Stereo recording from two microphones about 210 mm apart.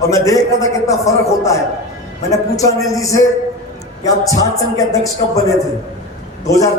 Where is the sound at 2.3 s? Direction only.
15° left (ahead or behind).